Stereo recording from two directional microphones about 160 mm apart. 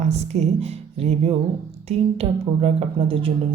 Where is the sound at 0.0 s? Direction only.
45° right (ahead or behind).